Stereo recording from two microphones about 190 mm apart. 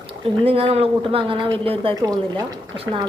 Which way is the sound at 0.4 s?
30° right (ahead or behind).